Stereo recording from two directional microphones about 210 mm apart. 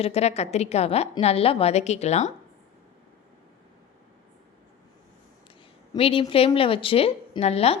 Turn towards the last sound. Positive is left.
turn(degrees=30)  # may be behind; listen again after turning